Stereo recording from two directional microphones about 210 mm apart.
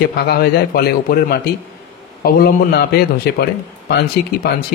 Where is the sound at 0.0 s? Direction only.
50° left (ahead or behind).